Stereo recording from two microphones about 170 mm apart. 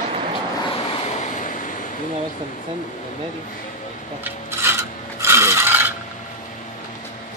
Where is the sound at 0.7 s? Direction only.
35° left (ahead or behind); by 1.8 s 50° left (ahead or behind).